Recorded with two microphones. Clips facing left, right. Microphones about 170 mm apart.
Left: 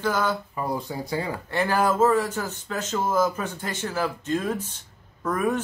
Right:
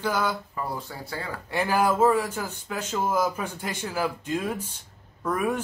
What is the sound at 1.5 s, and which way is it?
Speech, 10° right (ahead or behind).